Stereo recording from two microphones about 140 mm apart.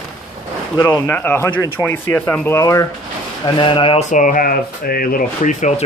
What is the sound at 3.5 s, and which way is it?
Speech, 35° left (ahead or behind).